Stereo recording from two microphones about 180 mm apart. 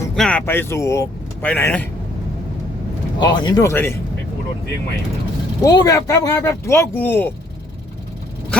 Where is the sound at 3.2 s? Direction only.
25° left (ahead or behind).